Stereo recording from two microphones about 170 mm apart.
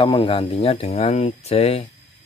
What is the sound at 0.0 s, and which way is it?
Speech, 30° left (ahead or behind).